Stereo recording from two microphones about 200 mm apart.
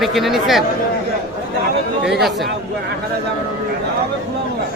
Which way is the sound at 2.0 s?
Centre (ahead or behind).